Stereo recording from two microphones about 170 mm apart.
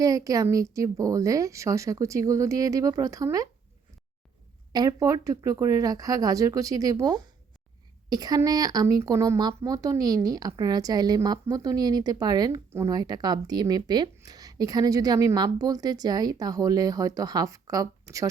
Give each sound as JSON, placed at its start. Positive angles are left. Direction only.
{"t": 0.0, "sound": "speech", "side_deg": -20}
{"t": 4.7, "sound": "speech", "side_deg": -20}
{"t": 8.1, "sound": "speech", "side_deg": -20}